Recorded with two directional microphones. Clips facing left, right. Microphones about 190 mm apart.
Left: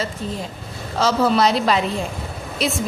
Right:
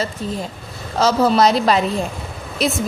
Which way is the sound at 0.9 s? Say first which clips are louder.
Right 2 dB; 40° right (ahead or behind).